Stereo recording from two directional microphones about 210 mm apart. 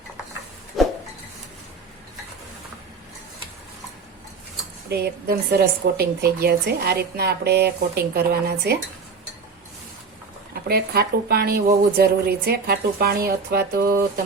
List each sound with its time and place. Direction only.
0.8 s a sound: centre (ahead or behind)
4.9 s a woman's voice: 50° right (ahead or behind)
10.7 s a woman's voice: 50° right (ahead or behind)